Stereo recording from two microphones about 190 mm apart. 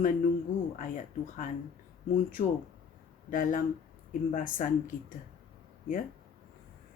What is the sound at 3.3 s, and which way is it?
Speech, 45° left (ahead or behind).